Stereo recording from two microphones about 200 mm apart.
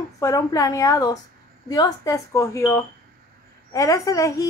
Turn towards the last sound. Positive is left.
turn(degrees=15)  # may be behind; listen again after turning